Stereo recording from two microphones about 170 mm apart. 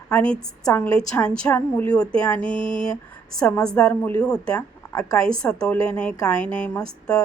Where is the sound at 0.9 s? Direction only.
5° left (ahead or behind).